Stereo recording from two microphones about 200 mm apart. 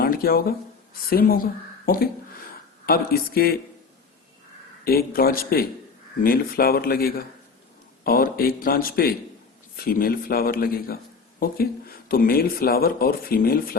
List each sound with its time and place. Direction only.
0.0 s speech: 50° left (ahead or behind)
1.8 s a man's voice: 50° left (ahead or behind)
4.9 s a man's voice: 50° left (ahead or behind)